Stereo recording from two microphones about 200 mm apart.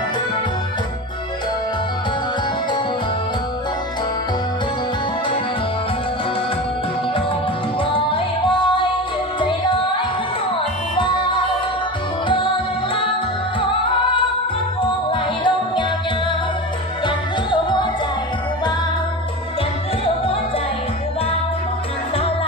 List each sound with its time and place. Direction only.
7.9 s music: 25° left (ahead or behind)
15.0 s music: 25° left (ahead or behind)
17.0 s music: 25° left (ahead or behind)